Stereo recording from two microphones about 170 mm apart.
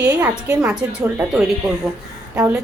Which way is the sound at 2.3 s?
15° right (ahead or behind).